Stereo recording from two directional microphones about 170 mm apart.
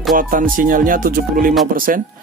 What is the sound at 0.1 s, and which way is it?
Music, 55° right (ahead or behind).